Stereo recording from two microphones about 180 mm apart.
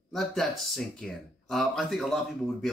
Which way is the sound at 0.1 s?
Centre (ahead or behind).